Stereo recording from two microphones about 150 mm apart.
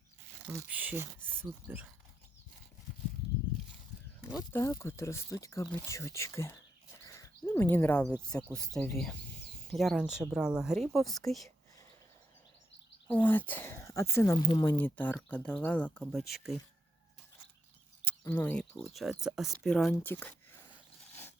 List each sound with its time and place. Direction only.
0.5 s speech: 10° right (ahead or behind)
4.4 s speech: 20° left (ahead or behind)
7.0 s bird: 20° left (ahead or behind)
8.2 s speech: 5° left (ahead or behind)
13.1 s speech: 10° left (ahead or behind)
14.3 s speech: 25° left (ahead or behind)
14.6 s speech: 15° left (ahead or behind); by 16.6 s centre (ahead or behind)
18.2 s speech: 15° left (ahead or behind)
19.9 s speech: 15° left (ahead or behind)